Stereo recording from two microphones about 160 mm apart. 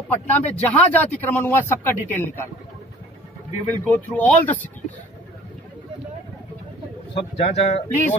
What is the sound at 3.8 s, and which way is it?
Speech, 10° left (ahead or behind).